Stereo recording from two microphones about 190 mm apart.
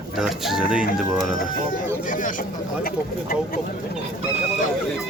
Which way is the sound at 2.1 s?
45° left (ahead or behind).